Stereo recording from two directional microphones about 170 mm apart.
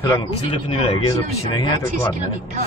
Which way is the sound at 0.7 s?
35° left (ahead or behind).